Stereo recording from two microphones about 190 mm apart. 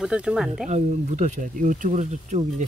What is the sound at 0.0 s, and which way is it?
Speech, 5° right (ahead or behind).